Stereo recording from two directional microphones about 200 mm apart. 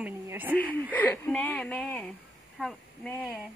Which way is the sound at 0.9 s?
10° left (ahead or behind).